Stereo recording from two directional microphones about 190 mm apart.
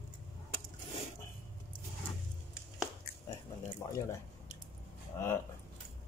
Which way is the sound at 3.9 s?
15° left (ahead or behind).